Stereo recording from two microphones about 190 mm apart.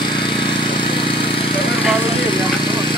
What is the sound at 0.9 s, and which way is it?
Vehicle, 25° left (ahead or behind).